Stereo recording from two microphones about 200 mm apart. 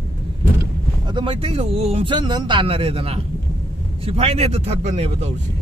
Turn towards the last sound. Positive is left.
turn(degrees=-30)  # may be behind; listen again after turning